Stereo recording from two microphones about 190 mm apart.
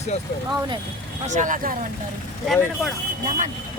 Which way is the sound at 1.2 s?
40° right (ahead or behind).